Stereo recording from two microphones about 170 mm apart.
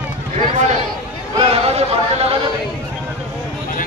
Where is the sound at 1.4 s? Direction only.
35° right (ahead or behind).